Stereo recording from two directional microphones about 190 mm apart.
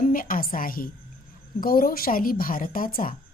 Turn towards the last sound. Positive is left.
turn(degrees=45)  # may be behind; listen again after turning